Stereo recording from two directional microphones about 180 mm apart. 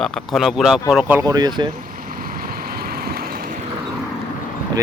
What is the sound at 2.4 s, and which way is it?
Vehicle, 55° right (ahead or behind).